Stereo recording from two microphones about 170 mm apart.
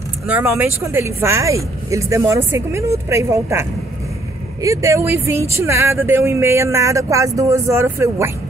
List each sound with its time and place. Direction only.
0.3 s speech: 10° right (ahead or behind)
4.6 s speech: 15° right (ahead or behind)